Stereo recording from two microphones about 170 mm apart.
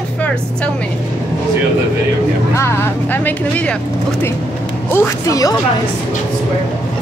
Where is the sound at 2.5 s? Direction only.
15° left (ahead or behind).